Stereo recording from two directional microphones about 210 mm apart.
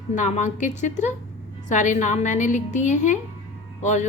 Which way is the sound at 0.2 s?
35° left (ahead or behind).